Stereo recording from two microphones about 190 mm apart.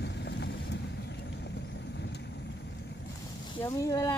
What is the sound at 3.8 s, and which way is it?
Speech, 15° left (ahead or behind).